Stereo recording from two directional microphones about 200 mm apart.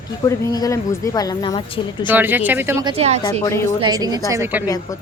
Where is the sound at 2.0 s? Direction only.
10° right (ahead or behind).